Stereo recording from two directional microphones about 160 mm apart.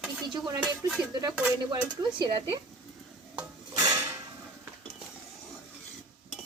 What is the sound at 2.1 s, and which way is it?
Stir, 30° right (ahead or behind).